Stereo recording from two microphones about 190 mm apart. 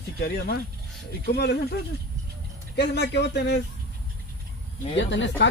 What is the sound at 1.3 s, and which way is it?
Speech, 60° left (ahead or behind).